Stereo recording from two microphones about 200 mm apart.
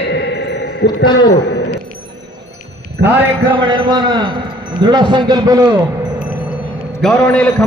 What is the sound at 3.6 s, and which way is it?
A man's voice, 20° right (ahead or behind).